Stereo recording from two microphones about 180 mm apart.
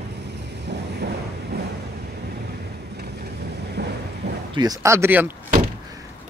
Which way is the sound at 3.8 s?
70° right (ahead or behind).